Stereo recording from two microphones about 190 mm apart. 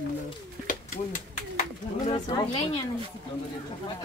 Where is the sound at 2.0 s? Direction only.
25° left (ahead or behind).